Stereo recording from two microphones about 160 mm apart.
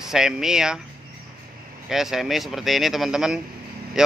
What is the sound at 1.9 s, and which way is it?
Speech, centre (ahead or behind).